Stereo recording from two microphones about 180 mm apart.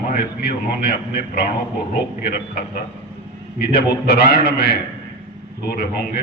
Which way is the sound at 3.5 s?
65° left (ahead or behind).